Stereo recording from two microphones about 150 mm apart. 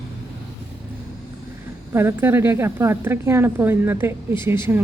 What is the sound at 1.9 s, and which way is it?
A woman's voice, 15° right (ahead or behind).